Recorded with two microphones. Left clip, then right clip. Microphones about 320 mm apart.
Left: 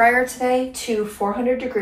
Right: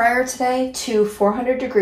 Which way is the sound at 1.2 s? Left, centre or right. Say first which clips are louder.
Right 5 dB; right.